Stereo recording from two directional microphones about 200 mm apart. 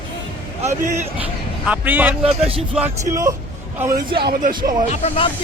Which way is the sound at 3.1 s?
15° right (ahead or behind).